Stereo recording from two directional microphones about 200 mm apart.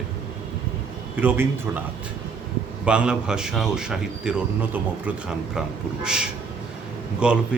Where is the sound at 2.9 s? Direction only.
5° right (ahead or behind).